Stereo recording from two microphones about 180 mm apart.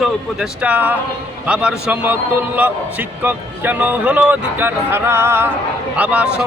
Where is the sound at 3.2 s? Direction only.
10° right (ahead or behind).